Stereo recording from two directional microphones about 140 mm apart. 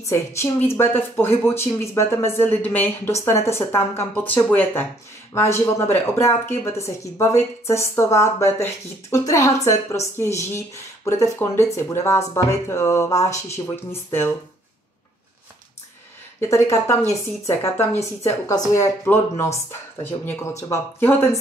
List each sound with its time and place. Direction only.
0.0 s a woman's voice: 20° left (ahead or behind)
16.3 s a woman's voice: 20° left (ahead or behind)
18.5 s a woman's voice: 20° left (ahead or behind)